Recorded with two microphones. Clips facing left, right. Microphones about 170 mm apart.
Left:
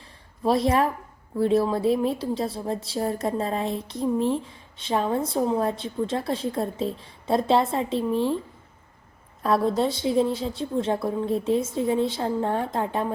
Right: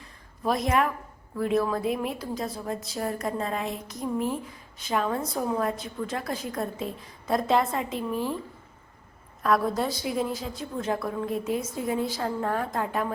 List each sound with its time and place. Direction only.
0.0 s a sound: 30° left (ahead or behind)
1.4 s a woman's voice: 30° left (ahead or behind)
9.4 s a woman's voice: 25° left (ahead or behind)